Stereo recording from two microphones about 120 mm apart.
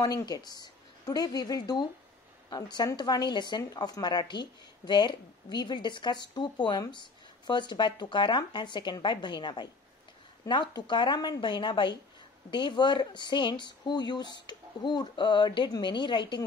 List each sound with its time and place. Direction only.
0.0 s speech: 35° left (ahead or behind)